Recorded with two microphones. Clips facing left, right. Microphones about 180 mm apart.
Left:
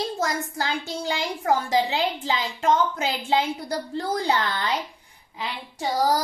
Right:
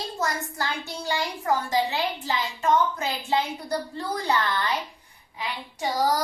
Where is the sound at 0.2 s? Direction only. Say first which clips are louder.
Left 2 dB; 90° left.